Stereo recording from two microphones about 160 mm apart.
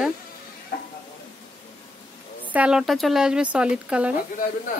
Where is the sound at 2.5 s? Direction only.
5° right (ahead or behind).